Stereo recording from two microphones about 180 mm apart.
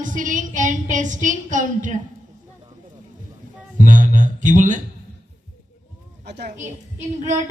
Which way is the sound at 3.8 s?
45° right (ahead or behind).